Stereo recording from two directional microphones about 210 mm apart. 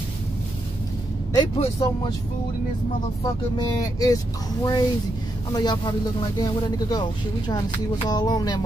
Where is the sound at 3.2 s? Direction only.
15° left (ahead or behind).